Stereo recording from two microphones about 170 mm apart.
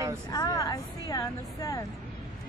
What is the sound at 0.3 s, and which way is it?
A woman's voice, 20° left (ahead or behind).